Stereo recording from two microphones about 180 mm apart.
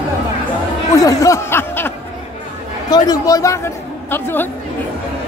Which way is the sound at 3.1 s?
20° left (ahead or behind).